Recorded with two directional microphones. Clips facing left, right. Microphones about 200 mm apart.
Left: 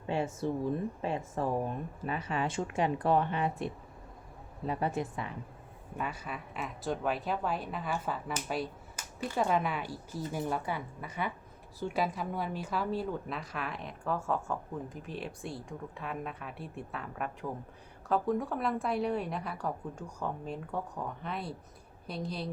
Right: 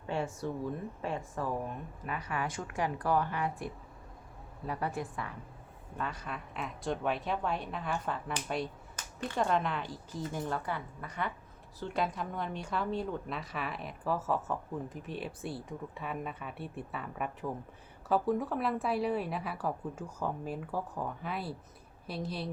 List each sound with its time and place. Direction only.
0.1 s speech: 20° left (ahead or behind)
6.0 s a woman's voice: 10° left (ahead or behind)